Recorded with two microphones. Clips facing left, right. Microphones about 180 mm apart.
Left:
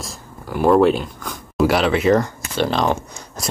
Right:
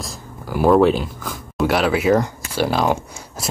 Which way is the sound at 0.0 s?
Centre (ahead or behind).